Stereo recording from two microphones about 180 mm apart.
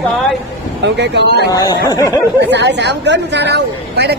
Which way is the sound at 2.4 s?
70° right (ahead or behind).